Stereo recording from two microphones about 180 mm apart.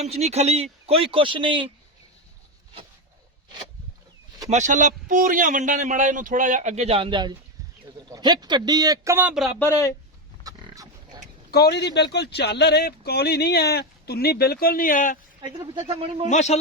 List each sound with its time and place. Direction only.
0.0 s speech: 35° right (ahead or behind)
4.4 s a man's voice: 40° right (ahead or behind); by 9.5 s 5° right (ahead or behind)
9.6 s speech: 15° left (ahead or behind)
10.4 s a sound: 20° right (ahead or behind)
11.5 s speech: 65° left (ahead or behind); by 15.2 s 50° left (ahead or behind)
15.4 s speech: 25° right (ahead or behind)
16.3 s a man's voice: 40° left (ahead or behind)